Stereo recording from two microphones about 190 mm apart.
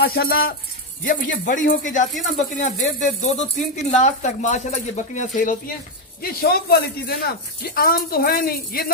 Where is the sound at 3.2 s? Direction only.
40° left (ahead or behind).